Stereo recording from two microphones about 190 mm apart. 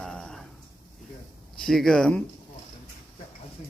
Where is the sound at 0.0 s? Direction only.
5° left (ahead or behind).